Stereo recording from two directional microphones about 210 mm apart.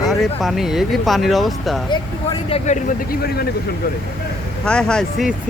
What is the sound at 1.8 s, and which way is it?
Speech, 25° left (ahead or behind).